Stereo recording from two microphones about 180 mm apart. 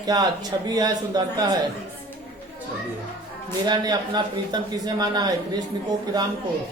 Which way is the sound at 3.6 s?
20° right (ahead or behind).